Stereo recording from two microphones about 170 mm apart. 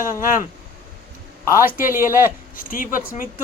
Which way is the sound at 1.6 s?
55° left (ahead or behind).